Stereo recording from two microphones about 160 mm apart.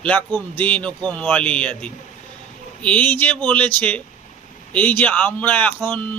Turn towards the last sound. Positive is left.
turn(degrees=10)  # may be behind; listen again after turning